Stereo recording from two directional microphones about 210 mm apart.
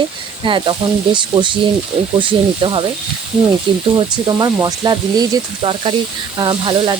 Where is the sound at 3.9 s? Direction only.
20° right (ahead or behind).